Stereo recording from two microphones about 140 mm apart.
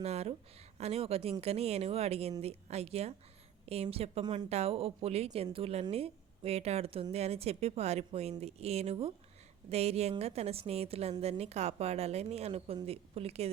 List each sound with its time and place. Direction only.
0.0 s a woman's voice: 50° right (ahead or behind)
4.2 s speech: 30° right (ahead or behind)
4.4 s a woman's voice: 50° right (ahead or behind)